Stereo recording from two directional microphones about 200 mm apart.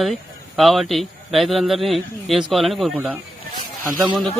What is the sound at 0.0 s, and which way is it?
A man's voice, centre (ahead or behind).